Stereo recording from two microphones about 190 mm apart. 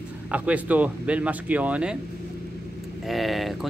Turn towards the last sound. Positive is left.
turn(degrees=0)  # may be behind; listen again after turning